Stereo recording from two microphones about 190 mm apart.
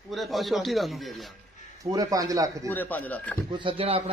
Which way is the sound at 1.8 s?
20° right (ahead or behind).